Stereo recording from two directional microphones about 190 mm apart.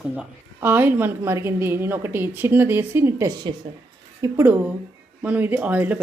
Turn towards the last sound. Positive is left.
turn(degrees=-10)  # may be behind; listen again after turning